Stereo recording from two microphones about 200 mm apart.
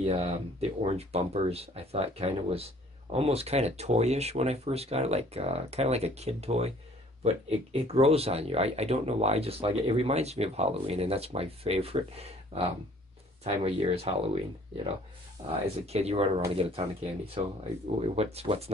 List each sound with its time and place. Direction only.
0.0 s speech: 30° right (ahead or behind)